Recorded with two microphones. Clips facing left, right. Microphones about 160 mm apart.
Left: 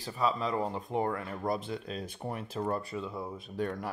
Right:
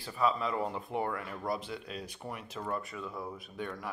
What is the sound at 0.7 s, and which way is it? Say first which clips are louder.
Speech: left 3 dB; 35° left (ahead or behind).